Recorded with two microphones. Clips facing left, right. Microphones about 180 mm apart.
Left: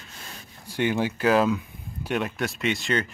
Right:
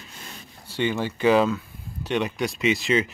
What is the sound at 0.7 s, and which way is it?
Speech, 15° left (ahead or behind).